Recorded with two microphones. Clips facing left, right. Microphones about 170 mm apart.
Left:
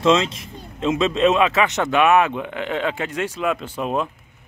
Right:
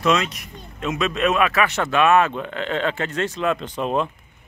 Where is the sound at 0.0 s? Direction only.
25° left (ahead or behind).